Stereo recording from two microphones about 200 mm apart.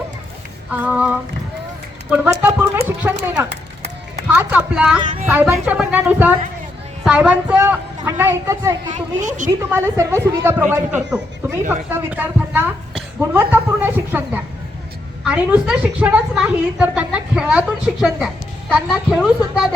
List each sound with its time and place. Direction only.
0.7 s a woman's voice: 5° right (ahead or behind)
8.9 s a woman's voice: 40° right (ahead or behind)
9.6 s a woman's voice: 15° right (ahead or behind)